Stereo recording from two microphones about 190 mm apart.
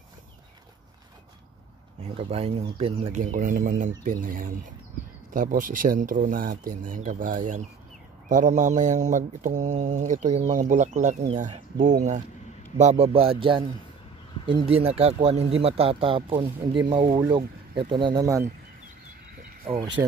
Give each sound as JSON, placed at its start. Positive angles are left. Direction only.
{"t": 2.1, "sound": "speech", "side_deg": -35}
{"t": 12.7, "sound": "speech", "side_deg": -35}
{"t": 19.3, "sound": "a sound", "side_deg": -50}
{"t": 20.0, "sound": "speech", "side_deg": -15}